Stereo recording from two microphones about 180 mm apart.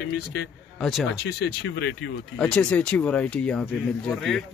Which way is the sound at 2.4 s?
5° left (ahead or behind).